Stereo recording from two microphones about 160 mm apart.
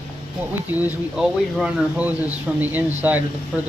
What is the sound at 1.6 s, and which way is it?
Speech, 10° right (ahead or behind).